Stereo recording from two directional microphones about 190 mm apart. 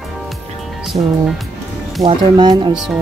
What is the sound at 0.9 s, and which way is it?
Speech, 35° right (ahead or behind).